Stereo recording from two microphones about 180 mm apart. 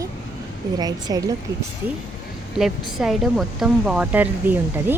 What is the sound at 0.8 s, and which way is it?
Speech, 20° right (ahead or behind).